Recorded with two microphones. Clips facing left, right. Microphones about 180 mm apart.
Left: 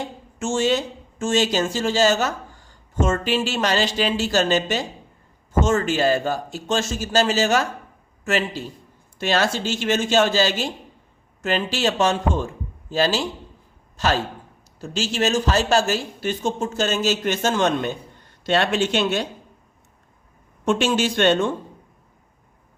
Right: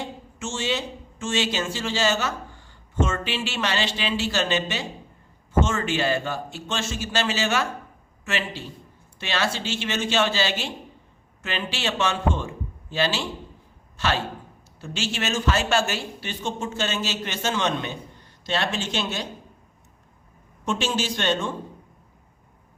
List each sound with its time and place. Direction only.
0.0 s a man's voice: 45° left (ahead or behind)
18.4 s speech: 60° left (ahead or behind)
20.7 s speech: 55° left (ahead or behind)